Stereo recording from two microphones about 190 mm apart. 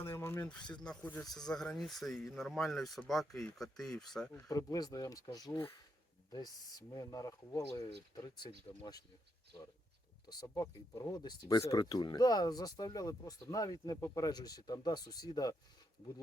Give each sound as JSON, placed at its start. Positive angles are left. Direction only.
{"t": 0.0, "sound": "a sound", "side_deg": 15}
{"t": 0.6, "sound": "speech", "side_deg": 25}
{"t": 0.9, "sound": "speech", "side_deg": 5}
{"t": 4.3, "sound": "speech", "side_deg": 15}
{"t": 10.2, "sound": "speech", "side_deg": 20}